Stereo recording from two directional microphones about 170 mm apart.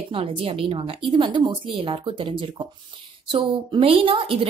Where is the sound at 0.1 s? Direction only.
35° right (ahead or behind).